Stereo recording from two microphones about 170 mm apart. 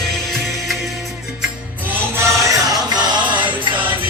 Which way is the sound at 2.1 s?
15° right (ahead or behind).